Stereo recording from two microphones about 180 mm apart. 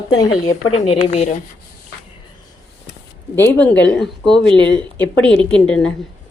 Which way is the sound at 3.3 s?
10° left (ahead or behind).